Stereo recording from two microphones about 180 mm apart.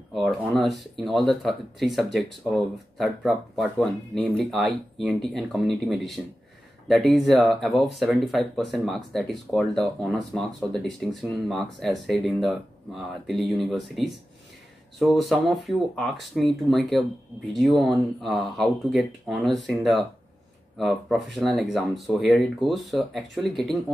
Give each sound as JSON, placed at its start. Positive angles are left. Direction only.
{"t": 0.1, "sound": "speech", "side_deg": 0}